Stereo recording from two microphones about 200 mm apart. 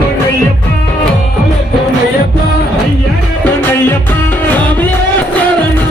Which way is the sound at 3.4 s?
10° left (ahead or behind).